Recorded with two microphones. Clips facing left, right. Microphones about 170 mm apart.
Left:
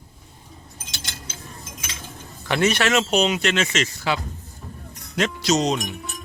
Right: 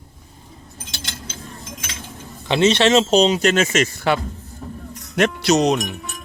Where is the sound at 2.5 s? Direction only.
25° right (ahead or behind); by 4.2 s 50° right (ahead or behind).